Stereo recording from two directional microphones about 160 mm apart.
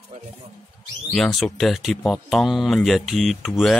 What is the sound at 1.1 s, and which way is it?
Speech, 5° left (ahead or behind).